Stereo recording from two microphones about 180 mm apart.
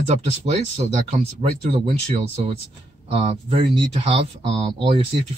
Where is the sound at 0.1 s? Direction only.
35° right (ahead or behind).